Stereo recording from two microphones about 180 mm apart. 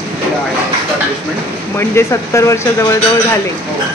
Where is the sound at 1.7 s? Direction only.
15° left (ahead or behind).